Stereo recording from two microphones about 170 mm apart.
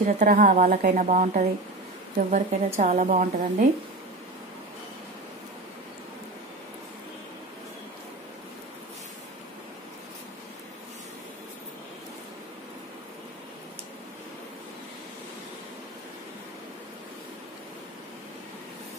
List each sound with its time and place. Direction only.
0.0 s speech: 50° right (ahead or behind)